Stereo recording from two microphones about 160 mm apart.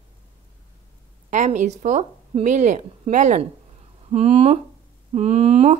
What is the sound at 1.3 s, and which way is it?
A woman's voice, 50° right (ahead or behind).